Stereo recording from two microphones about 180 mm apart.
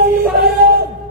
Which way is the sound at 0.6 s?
55° right (ahead or behind).